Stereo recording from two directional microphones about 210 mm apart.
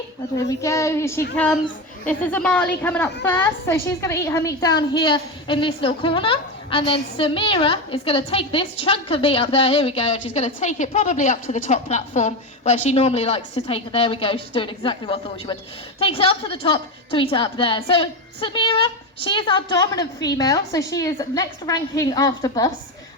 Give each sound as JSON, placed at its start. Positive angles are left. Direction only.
{"t": 0.4, "sound": "a woman's voice", "side_deg": 15}